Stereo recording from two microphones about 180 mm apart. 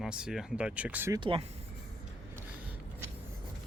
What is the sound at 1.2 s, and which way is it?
Speech, 30° right (ahead or behind).